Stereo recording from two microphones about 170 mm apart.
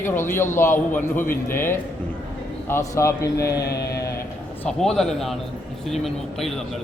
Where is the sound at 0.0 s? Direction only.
15° left (ahead or behind).